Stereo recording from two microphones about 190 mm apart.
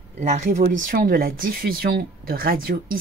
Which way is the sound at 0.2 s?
40° right (ahead or behind).